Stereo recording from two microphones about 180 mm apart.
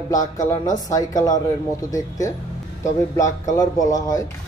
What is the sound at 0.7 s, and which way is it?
Speech, 20° left (ahead or behind).